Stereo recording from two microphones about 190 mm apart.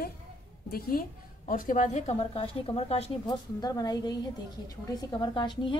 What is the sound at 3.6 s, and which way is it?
A woman's voice, 20° left (ahead or behind).